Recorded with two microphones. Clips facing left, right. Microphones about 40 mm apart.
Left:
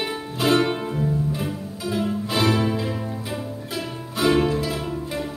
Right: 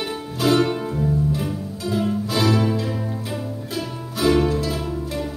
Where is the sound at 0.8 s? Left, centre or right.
Centre.